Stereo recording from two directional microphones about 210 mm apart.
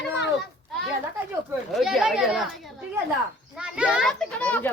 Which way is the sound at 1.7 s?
Centre (ahead or behind).